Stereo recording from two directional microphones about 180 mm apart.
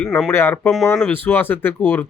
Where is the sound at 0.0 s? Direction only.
10° left (ahead or behind).